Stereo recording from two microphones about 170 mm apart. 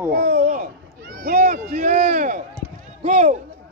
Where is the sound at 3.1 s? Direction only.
50° right (ahead or behind).